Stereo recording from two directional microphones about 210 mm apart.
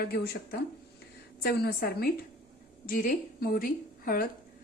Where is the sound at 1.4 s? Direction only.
50° left (ahead or behind).